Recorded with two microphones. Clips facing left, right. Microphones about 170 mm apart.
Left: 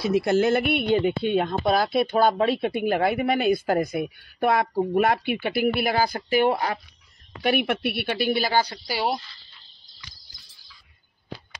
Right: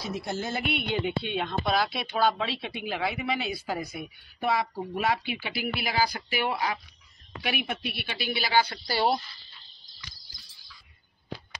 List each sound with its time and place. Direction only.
0.0 s speech: 75° left (ahead or behind); by 6.8 s 45° left (ahead or behind)
7.6 s speech: 70° left (ahead or behind); by 8.6 s 50° left (ahead or behind)
8.7 s speech: 10° left (ahead or behind)